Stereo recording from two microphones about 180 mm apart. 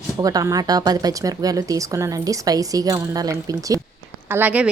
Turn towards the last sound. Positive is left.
turn(degrees=-10)  # may be behind; listen again after turning